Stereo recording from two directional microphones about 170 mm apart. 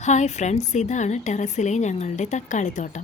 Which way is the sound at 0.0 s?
40° left (ahead or behind).